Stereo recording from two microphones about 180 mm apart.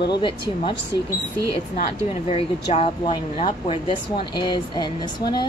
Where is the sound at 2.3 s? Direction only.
35° left (ahead or behind).